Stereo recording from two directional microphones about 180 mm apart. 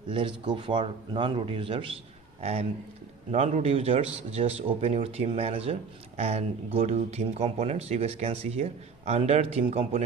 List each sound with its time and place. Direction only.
0.1 s a man's voice: 25° right (ahead or behind)
3.3 s a man's voice: 35° right (ahead or behind)